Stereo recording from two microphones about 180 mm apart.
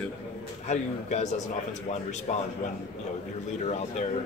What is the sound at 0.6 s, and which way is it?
A man's voice, 40° left (ahead or behind).